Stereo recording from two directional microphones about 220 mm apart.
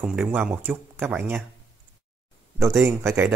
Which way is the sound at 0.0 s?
5° right (ahead or behind).